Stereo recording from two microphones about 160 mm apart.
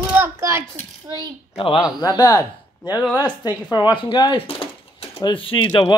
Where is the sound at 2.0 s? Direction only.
20° left (ahead or behind).